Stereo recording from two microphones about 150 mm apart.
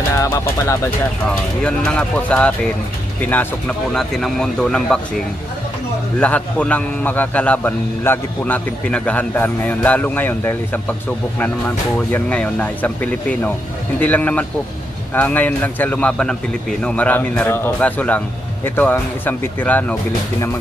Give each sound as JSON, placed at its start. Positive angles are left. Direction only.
{"t": 0.2, "sound": "speech", "side_deg": 20}
{"t": 1.6, "sound": "a man's voice", "side_deg": 5}
{"t": 6.1, "sound": "a man's voice", "side_deg": 10}